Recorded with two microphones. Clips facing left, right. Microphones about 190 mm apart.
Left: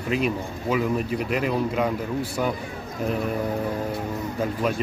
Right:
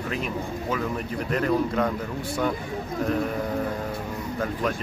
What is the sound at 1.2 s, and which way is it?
Speech, 10° left (ahead or behind).